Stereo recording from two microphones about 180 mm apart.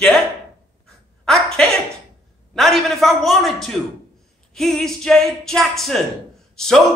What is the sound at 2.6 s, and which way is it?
A man's voice, centre (ahead or behind).